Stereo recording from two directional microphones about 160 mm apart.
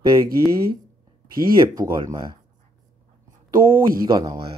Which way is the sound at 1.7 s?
25° right (ahead or behind).